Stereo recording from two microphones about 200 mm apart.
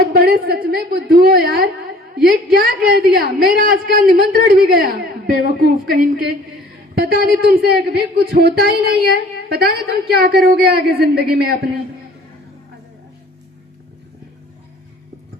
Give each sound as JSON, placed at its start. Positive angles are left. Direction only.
{"t": 0.1, "sound": "a man's voice", "side_deg": -50}